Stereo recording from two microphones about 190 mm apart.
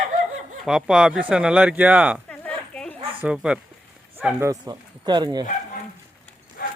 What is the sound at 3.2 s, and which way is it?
Speech, 5° right (ahead or behind).